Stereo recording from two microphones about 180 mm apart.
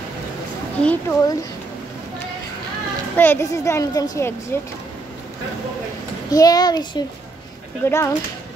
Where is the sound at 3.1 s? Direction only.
10° left (ahead or behind).